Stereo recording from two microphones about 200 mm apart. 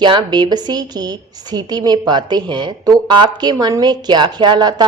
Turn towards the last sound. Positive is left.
turn(degrees=-20)  # may be behind; listen again after turning